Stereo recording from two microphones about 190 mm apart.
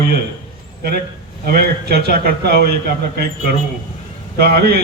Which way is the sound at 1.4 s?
55° right (ahead or behind).